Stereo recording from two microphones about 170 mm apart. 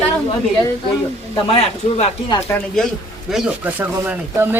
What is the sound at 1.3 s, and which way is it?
Speech, 35° left (ahead or behind).